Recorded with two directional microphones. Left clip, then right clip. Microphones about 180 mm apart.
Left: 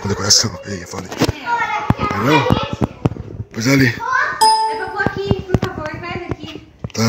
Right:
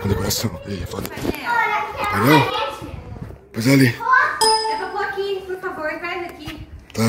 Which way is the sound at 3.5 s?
Centre (ahead or behind).